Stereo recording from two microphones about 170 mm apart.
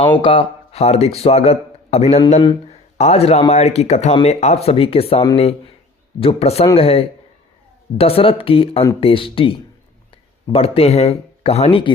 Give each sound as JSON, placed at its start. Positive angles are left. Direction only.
{"t": 0.0, "sound": "a man's voice", "side_deg": 30}